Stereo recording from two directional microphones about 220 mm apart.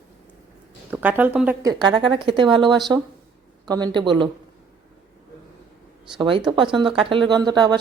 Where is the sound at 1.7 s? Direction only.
20° right (ahead or behind).